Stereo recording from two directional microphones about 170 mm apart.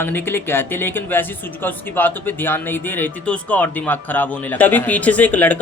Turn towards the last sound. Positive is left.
turn(degrees=10)  # may be behind; listen again after turning